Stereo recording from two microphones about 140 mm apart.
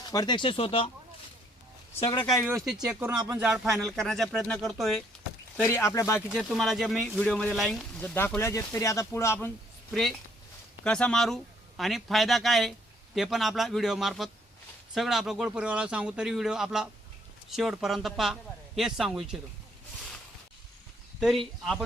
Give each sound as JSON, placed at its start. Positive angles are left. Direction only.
{"t": 0.0, "sound": "speech", "side_deg": 30}
{"t": 2.0, "sound": "speech", "side_deg": 40}
{"t": 2.6, "sound": "a man's voice", "side_deg": -5}
{"t": 3.2, "sound": "speech", "side_deg": -20}
{"t": 3.4, "sound": "a man's voice", "side_deg": -5}
{"t": 5.6, "sound": "speech", "side_deg": 20}
{"t": 6.5, "sound": "a man's voice", "side_deg": 0}
{"t": 9.9, "sound": "a man's voice", "side_deg": 0}
{"t": 21.2, "sound": "a man's voice", "side_deg": 0}